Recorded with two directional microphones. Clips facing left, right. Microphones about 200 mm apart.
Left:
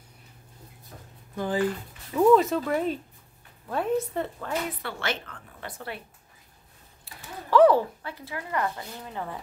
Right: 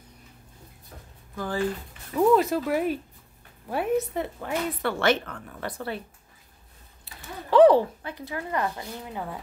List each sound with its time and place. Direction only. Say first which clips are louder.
1.3 s speech: left 2 dB; 20° left (ahead or behind)
2.1 s a woman's voice: left 1 dB; 5° right (ahead or behind)
4.8 s speech: right 9 dB; 60° right (ahead or behind)
7.5 s speech: right 2 dB; 20° right (ahead or behind)